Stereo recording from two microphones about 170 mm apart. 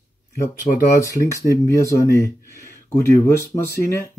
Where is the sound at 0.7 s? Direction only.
45° left (ahead or behind).